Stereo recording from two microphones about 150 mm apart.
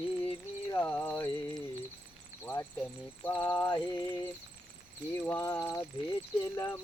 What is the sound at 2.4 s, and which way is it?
Speech, 10° left (ahead or behind).